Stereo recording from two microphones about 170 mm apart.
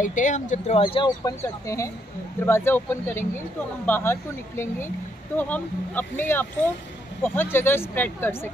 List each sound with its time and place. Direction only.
0.0 s speech: 50° left (ahead or behind); by 1.1 s 30° left (ahead or behind)
1.2 s speech: 20° left (ahead or behind)